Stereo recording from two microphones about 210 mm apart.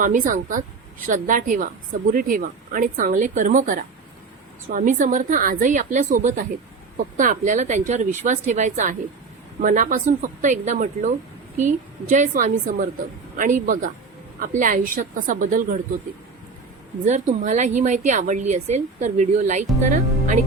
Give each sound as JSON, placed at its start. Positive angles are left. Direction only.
{"t": 0.0, "sound": "a woman's voice", "side_deg": -40}
{"t": 17.0, "sound": "a woman's voice", "side_deg": -35}